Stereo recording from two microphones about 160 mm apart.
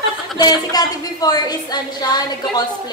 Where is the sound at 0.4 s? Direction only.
25° left (ahead or behind).